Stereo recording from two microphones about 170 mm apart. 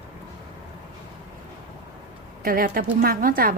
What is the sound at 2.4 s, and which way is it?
A woman's voice, 60° right (ahead or behind).